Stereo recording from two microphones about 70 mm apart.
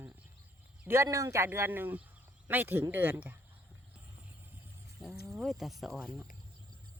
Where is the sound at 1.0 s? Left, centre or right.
Right.